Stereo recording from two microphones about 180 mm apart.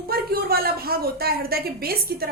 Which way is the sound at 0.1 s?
55° right (ahead or behind).